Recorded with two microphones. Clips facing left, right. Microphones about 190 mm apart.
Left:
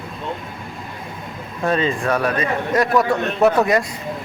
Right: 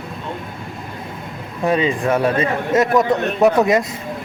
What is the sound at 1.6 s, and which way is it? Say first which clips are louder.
A man's voice: right 2 dB; 15° right (ahead or behind).